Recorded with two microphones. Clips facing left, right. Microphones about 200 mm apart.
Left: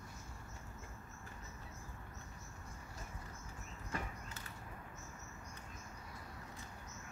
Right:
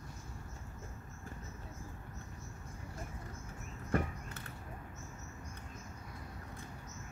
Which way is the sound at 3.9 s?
60° right (ahead or behind).